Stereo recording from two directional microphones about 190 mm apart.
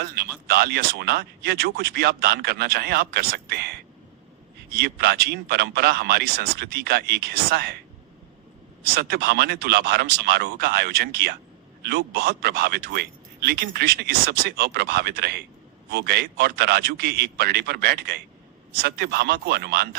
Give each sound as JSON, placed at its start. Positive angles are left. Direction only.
{"t": 0.4, "sound": "speech", "side_deg": -55}
{"t": 9.0, "sound": "speech", "side_deg": -55}